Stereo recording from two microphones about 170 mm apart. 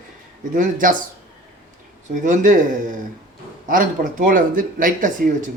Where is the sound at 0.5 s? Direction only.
50° right (ahead or behind).